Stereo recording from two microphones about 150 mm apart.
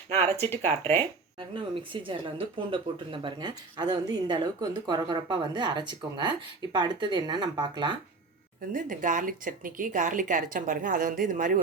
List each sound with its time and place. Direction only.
0.5 s speech: 40° right (ahead or behind)
8.7 s speech: 60° right (ahead or behind)